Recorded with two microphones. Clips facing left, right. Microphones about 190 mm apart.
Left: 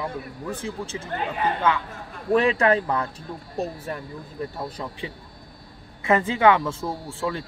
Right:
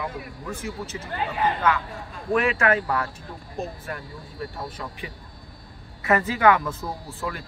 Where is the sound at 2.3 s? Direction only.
35° left (ahead or behind).